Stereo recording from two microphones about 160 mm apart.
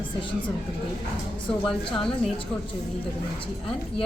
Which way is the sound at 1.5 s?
35° left (ahead or behind).